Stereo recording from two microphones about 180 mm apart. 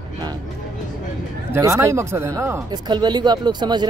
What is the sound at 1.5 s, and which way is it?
Speech, 15° right (ahead or behind).